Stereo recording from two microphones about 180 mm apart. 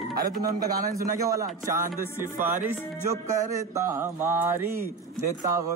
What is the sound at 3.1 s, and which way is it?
Mantra, 15° right (ahead or behind).